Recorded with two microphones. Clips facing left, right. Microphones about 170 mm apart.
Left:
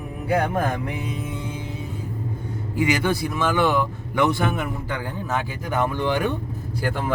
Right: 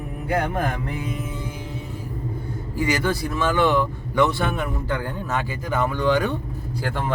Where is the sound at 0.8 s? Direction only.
20° left (ahead or behind).